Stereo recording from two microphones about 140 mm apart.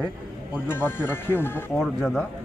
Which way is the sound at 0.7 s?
15° left (ahead or behind).